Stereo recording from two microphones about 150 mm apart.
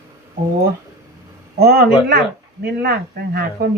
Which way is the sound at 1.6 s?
90° right.